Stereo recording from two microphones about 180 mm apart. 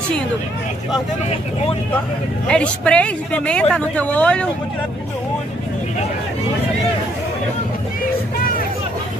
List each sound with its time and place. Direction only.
2.4 s speech: 5° left (ahead or behind)